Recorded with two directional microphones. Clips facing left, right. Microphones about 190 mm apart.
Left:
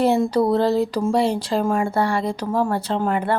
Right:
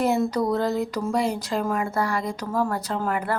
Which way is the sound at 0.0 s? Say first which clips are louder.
Left 4 dB; 30° left (ahead or behind).